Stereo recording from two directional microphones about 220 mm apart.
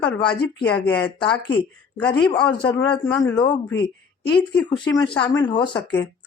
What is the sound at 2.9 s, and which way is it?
Speech, 15° left (ahead or behind).